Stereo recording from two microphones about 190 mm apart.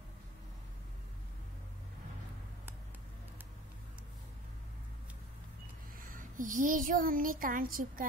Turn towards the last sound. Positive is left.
turn(degrees=-45)  # may be behind; listen again after turning